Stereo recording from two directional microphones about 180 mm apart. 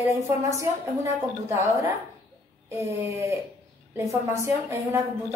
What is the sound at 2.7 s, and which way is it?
A woman's voice, 15° right (ahead or behind).